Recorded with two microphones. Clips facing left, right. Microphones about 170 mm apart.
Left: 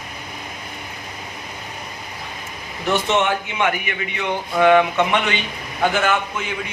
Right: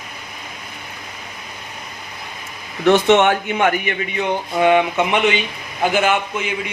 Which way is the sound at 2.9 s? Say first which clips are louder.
Right 6 dB; 65° right (ahead or behind).